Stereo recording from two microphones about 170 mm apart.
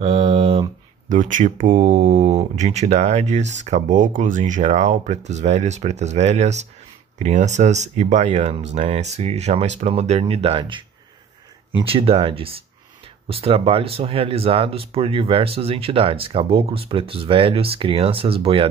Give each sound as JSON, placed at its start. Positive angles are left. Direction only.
{"t": 0.0, "sound": "a sound", "side_deg": -35}
{"t": 1.0, "sound": "speech", "side_deg": -50}
{"t": 1.7, "sound": "speech", "side_deg": -35}